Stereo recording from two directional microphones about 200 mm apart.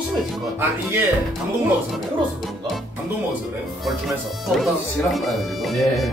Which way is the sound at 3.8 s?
Centre (ahead or behind).